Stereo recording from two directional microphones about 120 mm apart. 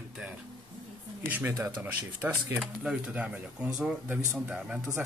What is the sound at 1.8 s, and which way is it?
Speech, 15° right (ahead or behind).